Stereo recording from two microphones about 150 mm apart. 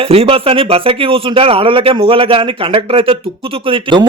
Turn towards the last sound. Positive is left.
turn(degrees=-35)  # may be behind; listen again after turning